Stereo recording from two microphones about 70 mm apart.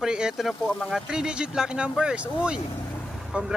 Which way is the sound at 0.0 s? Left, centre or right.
Centre.